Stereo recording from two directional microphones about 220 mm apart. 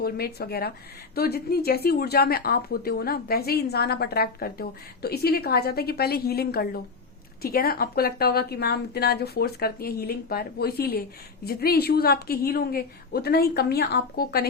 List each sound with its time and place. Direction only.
0.0 s a woman's voice: 45° left (ahead or behind)